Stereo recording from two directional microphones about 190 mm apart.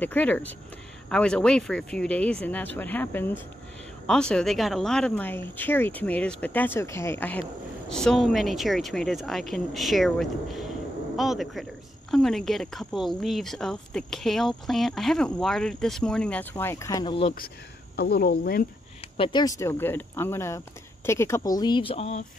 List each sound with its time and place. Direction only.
0.0 s a woman's voice: 10° left (ahead or behind); by 17.3 s 25° left (ahead or behind)
17.9 s speech: 55° left (ahead or behind)
19.1 s speech: 25° left (ahead or behind)